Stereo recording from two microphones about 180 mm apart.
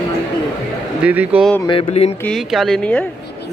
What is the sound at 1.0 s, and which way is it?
Speech, 10° right (ahead or behind).